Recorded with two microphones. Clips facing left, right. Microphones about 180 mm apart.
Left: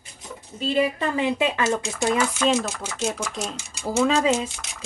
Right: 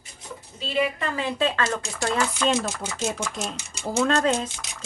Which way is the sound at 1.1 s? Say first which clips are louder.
Left 1 dB; 20° left (ahead or behind).